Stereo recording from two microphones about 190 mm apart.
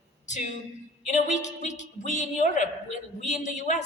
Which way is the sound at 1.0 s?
40° left (ahead or behind).